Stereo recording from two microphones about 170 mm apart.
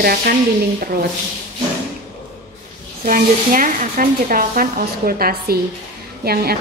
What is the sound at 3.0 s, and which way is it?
A woman's voice, 55° right (ahead or behind).